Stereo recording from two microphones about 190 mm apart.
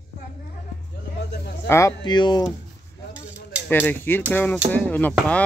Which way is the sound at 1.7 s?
15° left (ahead or behind).